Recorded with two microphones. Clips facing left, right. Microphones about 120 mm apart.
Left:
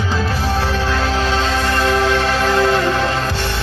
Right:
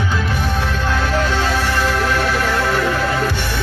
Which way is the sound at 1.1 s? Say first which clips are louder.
Even; 90° left.